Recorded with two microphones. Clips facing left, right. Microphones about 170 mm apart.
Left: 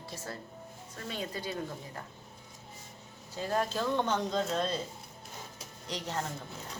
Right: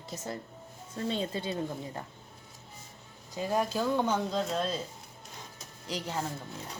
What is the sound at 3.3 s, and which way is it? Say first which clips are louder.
A woman's voice: right 2 dB; 15° right (ahead or behind).